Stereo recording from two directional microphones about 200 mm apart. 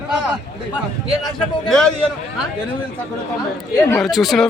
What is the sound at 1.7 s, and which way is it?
Speech, 5° left (ahead or behind).